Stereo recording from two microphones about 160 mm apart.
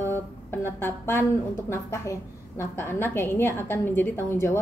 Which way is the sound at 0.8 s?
15° left (ahead or behind).